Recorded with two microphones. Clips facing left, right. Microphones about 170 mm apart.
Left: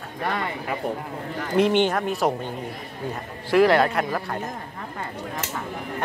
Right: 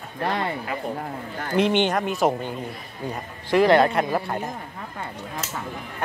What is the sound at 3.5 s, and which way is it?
Speech, centre (ahead or behind).